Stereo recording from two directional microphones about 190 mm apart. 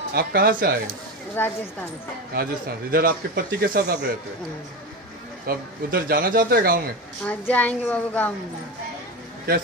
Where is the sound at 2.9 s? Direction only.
50° right (ahead or behind).